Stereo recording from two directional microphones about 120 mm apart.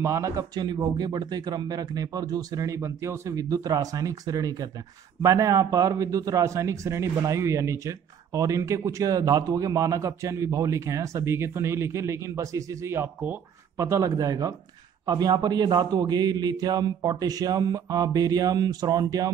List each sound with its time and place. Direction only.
0.0 s a man's voice: 25° right (ahead or behind)
13.7 s a man's voice: 25° right (ahead or behind)